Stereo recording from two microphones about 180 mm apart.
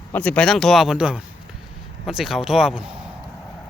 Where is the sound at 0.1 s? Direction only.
10° left (ahead or behind).